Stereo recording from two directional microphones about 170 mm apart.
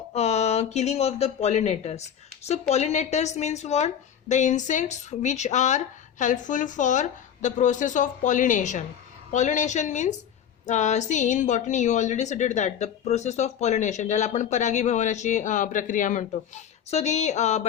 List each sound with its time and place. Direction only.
0.1 s a woman's voice: 40° left (ahead or behind)